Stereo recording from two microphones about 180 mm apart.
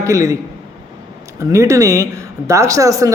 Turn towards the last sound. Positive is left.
turn(degrees=-20)  # may be behind; listen again after turning